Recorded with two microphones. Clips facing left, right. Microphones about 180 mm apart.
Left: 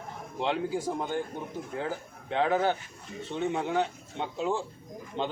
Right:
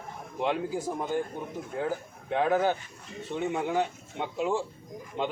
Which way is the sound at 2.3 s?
10° right (ahead or behind).